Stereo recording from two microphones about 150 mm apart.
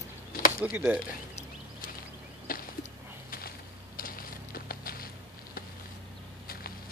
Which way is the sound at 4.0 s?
75° left (ahead or behind).